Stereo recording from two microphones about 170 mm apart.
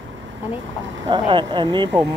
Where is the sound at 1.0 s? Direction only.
30° right (ahead or behind).